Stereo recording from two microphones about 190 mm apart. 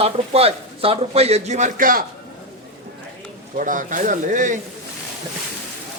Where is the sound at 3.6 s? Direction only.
45° right (ahead or behind).